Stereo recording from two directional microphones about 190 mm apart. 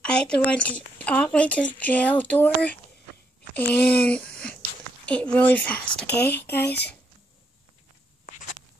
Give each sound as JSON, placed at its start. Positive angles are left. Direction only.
{"t": 0.0, "sound": "speech", "side_deg": 5}
{"t": 6.6, "sound": "speech", "side_deg": 60}